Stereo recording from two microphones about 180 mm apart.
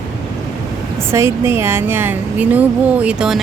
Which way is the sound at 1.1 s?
15° right (ahead or behind).